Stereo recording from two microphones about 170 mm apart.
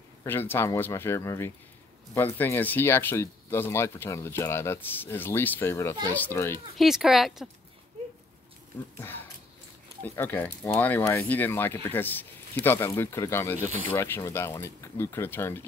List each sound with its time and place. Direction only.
0.2 s speech: 10° left (ahead or behind)
6.8 s speech: centre (ahead or behind)
9.0 s speech: 10° left (ahead or behind)